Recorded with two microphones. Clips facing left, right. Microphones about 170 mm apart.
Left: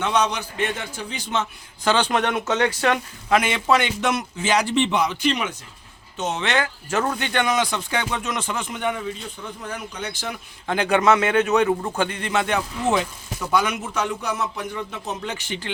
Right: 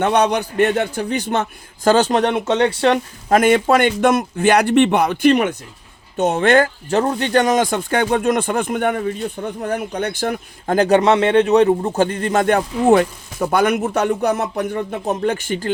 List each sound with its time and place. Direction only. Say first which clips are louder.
0.0 s a man's voice: right 6 dB; 60° right (ahead or behind); by 3.0 s 30° right (ahead or behind)
3.2 s a man's voice: right 6 dB; 45° right (ahead or behind)
6.9 s speech: right 7 dB; 30° right (ahead or behind)